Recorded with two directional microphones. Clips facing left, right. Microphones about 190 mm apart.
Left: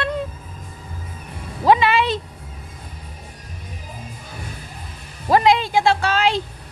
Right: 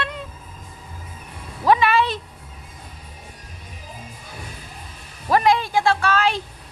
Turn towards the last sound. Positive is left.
turn(degrees=25)  # may be behind; listen again after turning